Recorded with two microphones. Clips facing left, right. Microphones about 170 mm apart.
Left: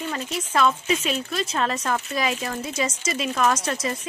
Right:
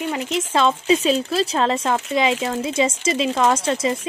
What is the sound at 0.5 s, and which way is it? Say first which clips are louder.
Speech: right 3 dB; 25° right (ahead or behind).